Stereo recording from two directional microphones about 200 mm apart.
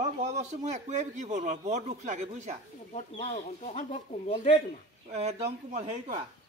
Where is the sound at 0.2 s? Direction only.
35° right (ahead or behind).